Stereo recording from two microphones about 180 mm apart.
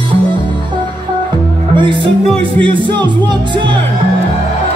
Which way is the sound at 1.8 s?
25° right (ahead or behind).